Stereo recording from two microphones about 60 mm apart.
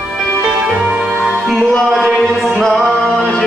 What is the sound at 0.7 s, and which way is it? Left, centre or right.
Music, centre.